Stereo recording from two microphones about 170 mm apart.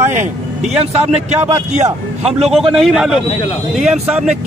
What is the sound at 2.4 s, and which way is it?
A man's voice, centre (ahead or behind).